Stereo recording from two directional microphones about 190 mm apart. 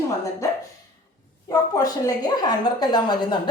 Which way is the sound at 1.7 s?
20° left (ahead or behind).